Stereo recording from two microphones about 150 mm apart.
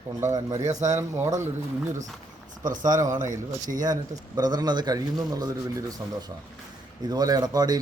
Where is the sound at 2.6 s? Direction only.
60° right (ahead or behind).